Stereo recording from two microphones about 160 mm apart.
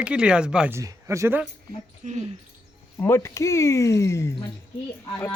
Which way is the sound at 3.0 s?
15° left (ahead or behind).